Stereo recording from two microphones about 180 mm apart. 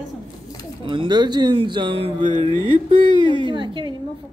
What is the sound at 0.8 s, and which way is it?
Speech, 25° right (ahead or behind).